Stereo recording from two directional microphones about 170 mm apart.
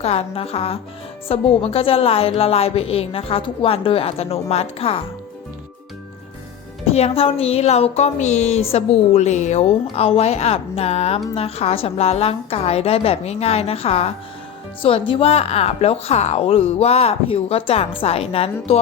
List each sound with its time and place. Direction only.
0.0 s a woman's voice: 35° left (ahead or behind)
6.9 s a woman's voice: 35° left (ahead or behind)